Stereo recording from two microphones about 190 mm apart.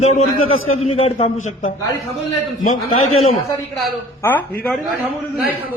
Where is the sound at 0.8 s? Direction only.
30° left (ahead or behind).